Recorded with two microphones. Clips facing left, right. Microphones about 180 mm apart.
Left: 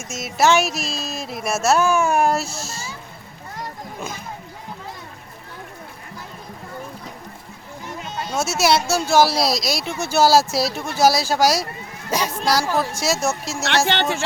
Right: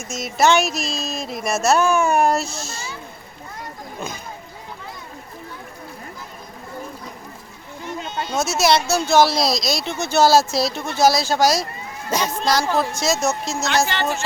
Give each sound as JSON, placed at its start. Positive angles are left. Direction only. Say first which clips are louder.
{"t": 0.1, "sound": "speech", "louder": "even", "side_deg": 5}
{"t": 8.3, "sound": "speech", "louder": "right 1 dB", "side_deg": 5}
{"t": 13.7, "sound": "speech", "louder": "left 1 dB", "side_deg": 80}